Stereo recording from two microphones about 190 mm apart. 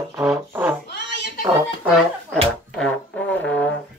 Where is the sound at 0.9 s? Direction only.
60° left (ahead or behind).